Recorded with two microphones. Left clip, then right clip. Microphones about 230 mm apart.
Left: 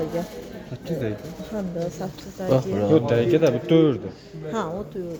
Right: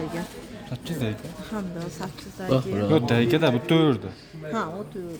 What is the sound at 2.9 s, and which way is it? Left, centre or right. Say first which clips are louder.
A man's voice: left 3 dB; right.